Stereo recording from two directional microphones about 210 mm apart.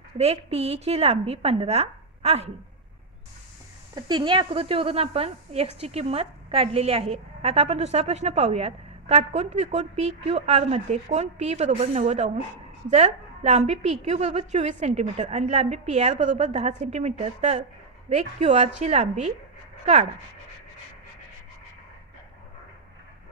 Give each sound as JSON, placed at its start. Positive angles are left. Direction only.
{"t": 0.2, "sound": "speech", "side_deg": -30}
{"t": 3.9, "sound": "a woman's voice", "side_deg": -20}